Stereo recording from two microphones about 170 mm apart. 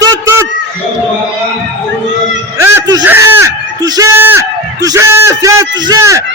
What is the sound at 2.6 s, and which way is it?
Speech, 20° right (ahead or behind).